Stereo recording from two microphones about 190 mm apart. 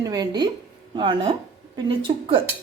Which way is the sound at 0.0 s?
20° right (ahead or behind).